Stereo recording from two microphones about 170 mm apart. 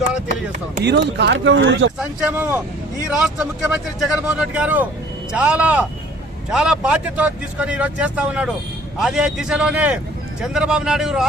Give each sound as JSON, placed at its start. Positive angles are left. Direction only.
{"t": 0.9, "sound": "speech", "side_deg": -90}
{"t": 2.0, "sound": "speech", "side_deg": -10}